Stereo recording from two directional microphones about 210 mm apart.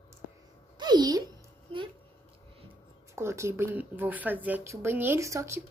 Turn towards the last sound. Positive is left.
turn(degrees=-15)  # may be behind; listen again after turning